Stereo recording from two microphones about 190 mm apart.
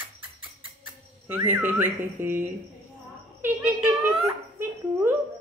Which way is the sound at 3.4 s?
10° right (ahead or behind).